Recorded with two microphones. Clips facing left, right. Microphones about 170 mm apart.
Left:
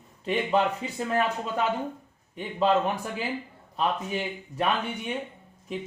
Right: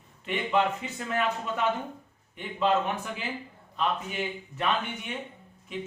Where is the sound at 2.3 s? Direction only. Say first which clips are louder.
Left 4 dB; 40° left (ahead or behind).